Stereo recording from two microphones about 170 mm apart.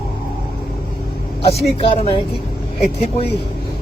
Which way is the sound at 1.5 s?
35° left (ahead or behind).